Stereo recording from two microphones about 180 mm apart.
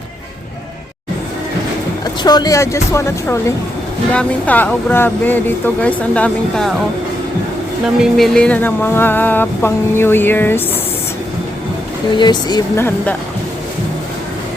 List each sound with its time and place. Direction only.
2.2 s speech: 20° left (ahead or behind); by 6.7 s 5° left (ahead or behind)
7.9 s speech: centre (ahead or behind)
12.1 s speech: 25° left (ahead or behind)